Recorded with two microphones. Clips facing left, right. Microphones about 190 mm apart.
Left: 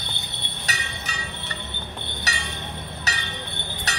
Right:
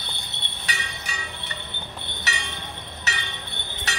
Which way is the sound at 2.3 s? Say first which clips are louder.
Even; 40° left (ahead or behind).